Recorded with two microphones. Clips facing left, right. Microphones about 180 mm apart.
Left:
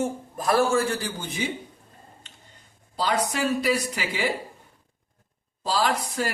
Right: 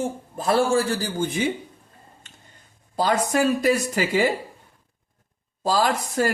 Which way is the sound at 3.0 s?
45° right (ahead or behind).